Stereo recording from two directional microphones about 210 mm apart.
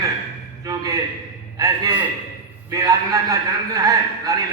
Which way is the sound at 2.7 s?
15° right (ahead or behind).